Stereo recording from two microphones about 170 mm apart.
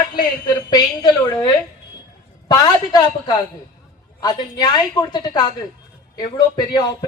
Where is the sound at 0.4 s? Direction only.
25° left (ahead or behind).